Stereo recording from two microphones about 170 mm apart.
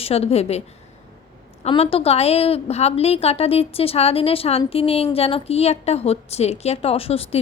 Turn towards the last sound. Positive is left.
turn(degrees=35)  # may be behind; listen again after turning